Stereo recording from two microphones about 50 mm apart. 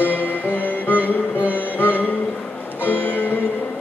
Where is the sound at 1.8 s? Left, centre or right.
Left.